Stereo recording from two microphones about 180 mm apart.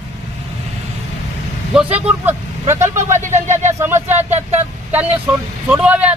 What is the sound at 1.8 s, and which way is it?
Vehicle, 35° right (ahead or behind).